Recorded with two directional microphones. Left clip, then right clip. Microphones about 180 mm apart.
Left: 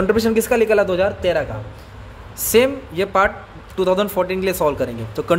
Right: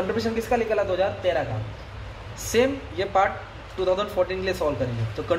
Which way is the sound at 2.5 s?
65° left (ahead or behind).